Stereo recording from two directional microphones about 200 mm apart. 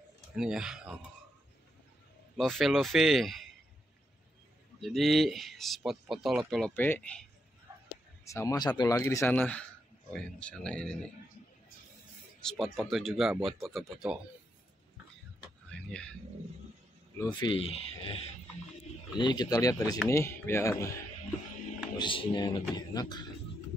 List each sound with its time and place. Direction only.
0.4 s speech: 5° right (ahead or behind)
2.3 s speech: centre (ahead or behind)
4.8 s speech: centre (ahead or behind)
7.7 s a sound: 15° right (ahead or behind)
8.3 s speech: 15° left (ahead or behind)
12.4 s speech: centre (ahead or behind)
15.7 s a sound: 5° left (ahead or behind)
17.3 s speech: 25° left (ahead or behind)
19.1 s speech: 20° left (ahead or behind)
21.9 s speech: 25° left (ahead or behind)